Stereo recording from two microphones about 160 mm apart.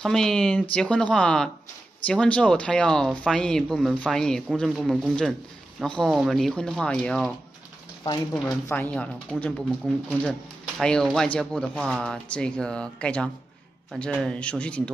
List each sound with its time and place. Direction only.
0.0 s speech: 5° left (ahead or behind)
8.0 s speech: 25° left (ahead or behind)
8.6 s speech: 10° left (ahead or behind)